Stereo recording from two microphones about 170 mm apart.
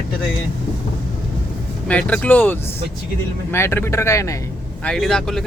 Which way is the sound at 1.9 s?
5° left (ahead or behind).